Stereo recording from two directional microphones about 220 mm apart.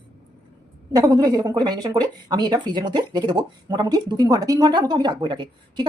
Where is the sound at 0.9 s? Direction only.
15° right (ahead or behind).